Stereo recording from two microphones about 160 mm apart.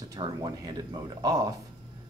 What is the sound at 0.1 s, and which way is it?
Speech, 25° right (ahead or behind).